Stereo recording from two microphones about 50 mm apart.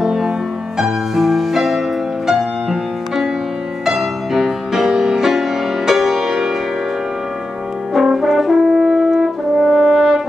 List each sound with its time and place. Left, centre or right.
0.0 s music: centre
7.9 s french horn: centre